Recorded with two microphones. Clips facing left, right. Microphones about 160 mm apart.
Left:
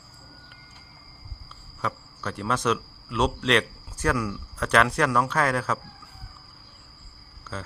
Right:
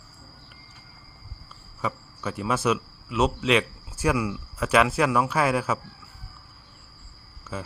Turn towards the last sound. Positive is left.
turn(degrees=-10)  # may be behind; listen again after turning